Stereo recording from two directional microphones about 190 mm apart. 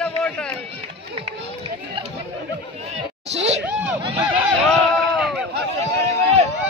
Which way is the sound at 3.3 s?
35° right (ahead or behind).